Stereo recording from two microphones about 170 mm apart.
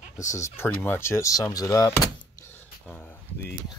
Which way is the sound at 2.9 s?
10° left (ahead or behind).